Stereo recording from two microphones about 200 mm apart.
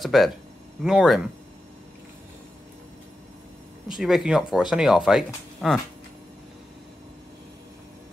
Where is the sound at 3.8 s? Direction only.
Centre (ahead or behind).